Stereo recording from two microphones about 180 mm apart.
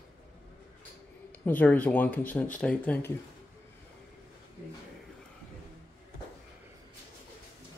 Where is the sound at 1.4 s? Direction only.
10° left (ahead or behind).